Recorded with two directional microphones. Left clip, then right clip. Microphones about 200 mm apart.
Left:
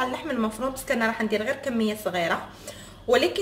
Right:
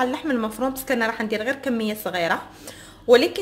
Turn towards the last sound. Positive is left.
turn(degrees=-45)  # may be behind; listen again after turning